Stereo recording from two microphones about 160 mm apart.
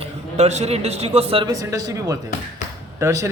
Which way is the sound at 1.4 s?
20° right (ahead or behind).